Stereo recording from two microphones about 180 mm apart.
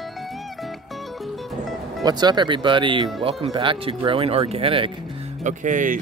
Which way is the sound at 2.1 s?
25° right (ahead or behind).